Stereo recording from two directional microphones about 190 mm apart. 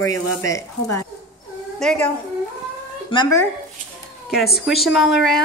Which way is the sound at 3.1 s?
20° left (ahead or behind).